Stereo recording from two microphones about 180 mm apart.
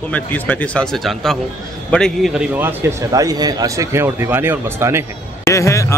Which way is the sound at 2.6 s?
20° right (ahead or behind).